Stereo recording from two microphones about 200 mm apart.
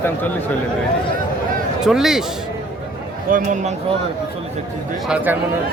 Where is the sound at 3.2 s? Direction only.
40° right (ahead or behind).